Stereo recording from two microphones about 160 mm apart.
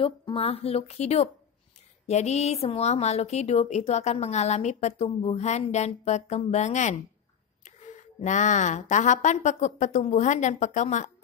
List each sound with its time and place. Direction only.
0.0 s a woman's voice: 35° left (ahead or behind); by 11.1 s 50° left (ahead or behind)